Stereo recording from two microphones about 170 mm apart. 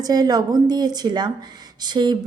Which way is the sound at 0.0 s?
20° right (ahead or behind).